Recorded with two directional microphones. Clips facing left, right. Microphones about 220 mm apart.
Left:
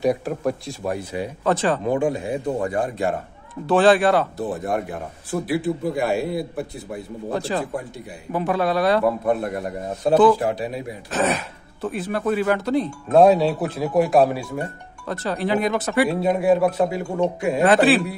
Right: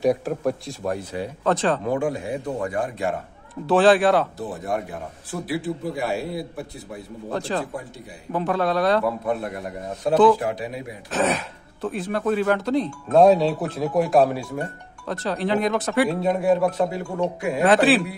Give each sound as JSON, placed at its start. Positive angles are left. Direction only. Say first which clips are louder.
{"t": 0.0, "sound": "speech", "louder": "even", "side_deg": 0}
{"t": 1.9, "sound": "a man's voice", "louder": "left 2 dB", "side_deg": 20}
{"t": 3.6, "sound": "speech", "louder": "even", "side_deg": 0}
{"t": 4.4, "sound": "a man's voice", "louder": "left 3 dB", "side_deg": 55}
{"t": 7.2, "sound": "a man's voice", "louder": "left 1 dB", "side_deg": 10}
{"t": 9.0, "sound": "a man's voice", "louder": "left 4 dB", "side_deg": 45}
{"t": 10.0, "sound": "speech", "louder": "left 1 dB", "side_deg": 30}
{"t": 11.1, "sound": "speech", "louder": "even", "side_deg": 0}
{"t": 17.2, "sound": "a man's voice", "louder": "left 3 dB", "side_deg": 25}
{"t": 17.6, "sound": "speech", "louder": "left 1 dB", "side_deg": 0}